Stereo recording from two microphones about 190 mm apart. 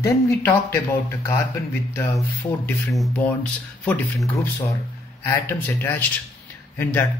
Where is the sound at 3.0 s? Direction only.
5° left (ahead or behind).